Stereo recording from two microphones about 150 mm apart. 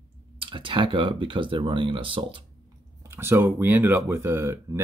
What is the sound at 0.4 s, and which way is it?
Speech, 35° right (ahead or behind).